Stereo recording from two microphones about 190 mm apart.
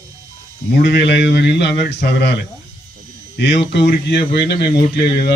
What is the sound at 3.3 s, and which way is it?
A man's voice, 65° left (ahead or behind).